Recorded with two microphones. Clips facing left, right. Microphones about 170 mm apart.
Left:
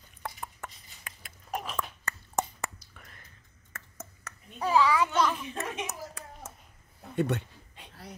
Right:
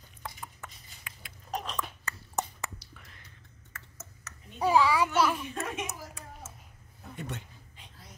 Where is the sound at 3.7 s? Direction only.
50° left (ahead or behind).